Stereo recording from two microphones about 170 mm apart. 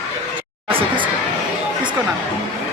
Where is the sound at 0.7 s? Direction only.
35° right (ahead or behind).